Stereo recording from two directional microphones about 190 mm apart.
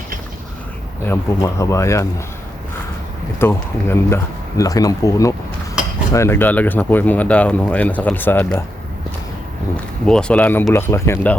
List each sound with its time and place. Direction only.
1.0 s speech: 15° left (ahead or behind)
3.3 s speech: 10° left (ahead or behind)
9.7 s speech: 5° left (ahead or behind)